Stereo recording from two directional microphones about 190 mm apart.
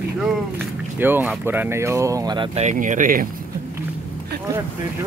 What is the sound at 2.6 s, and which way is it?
Speech, 40° right (ahead or behind).